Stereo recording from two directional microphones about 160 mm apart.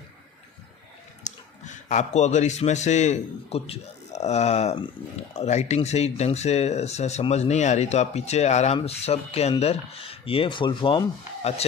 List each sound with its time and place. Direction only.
1.2 s speech: 50° left (ahead or behind)